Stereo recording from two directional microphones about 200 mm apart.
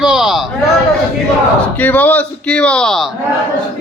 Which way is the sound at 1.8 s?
10° left (ahead or behind).